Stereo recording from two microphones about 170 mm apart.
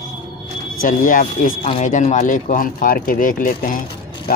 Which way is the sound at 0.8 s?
50° left (ahead or behind).